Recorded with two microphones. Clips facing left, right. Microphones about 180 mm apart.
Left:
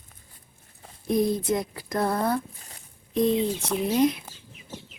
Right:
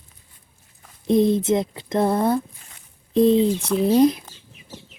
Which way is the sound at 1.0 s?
25° right (ahead or behind).